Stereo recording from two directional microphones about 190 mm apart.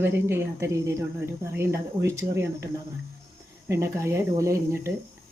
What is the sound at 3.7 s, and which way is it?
Speech, 15° right (ahead or behind).